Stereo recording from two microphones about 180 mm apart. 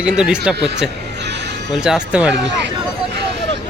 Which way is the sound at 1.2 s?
70° right (ahead or behind).